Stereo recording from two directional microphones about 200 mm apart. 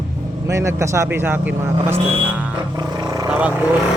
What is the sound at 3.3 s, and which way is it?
Speech, 5° right (ahead or behind).